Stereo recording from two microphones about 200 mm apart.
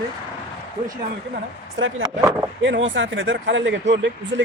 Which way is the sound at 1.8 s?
70° right (ahead or behind).